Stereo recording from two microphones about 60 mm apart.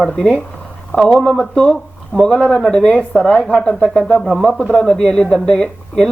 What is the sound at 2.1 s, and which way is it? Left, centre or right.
Speech, centre.